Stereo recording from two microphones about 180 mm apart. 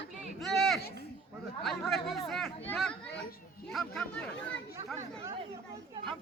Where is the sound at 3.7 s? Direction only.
Centre (ahead or behind).